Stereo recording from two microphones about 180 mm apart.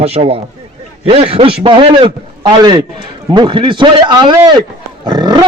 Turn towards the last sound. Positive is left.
turn(degrees=-25)  # may be behind; listen again after turning